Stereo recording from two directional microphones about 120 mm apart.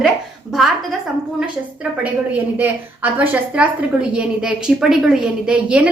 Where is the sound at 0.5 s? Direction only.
Centre (ahead or behind).